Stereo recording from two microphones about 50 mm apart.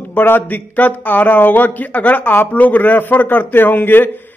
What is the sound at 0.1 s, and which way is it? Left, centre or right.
A man's voice, left.